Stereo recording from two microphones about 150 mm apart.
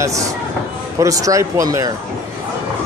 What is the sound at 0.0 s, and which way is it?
Speech, 20° right (ahead or behind).